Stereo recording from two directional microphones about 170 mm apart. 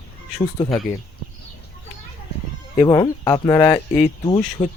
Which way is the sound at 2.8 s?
20° left (ahead or behind).